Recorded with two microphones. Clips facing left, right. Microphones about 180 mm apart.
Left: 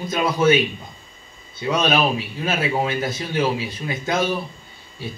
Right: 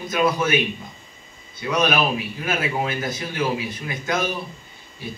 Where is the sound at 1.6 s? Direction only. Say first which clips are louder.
Left 1 dB; 30° left (ahead or behind).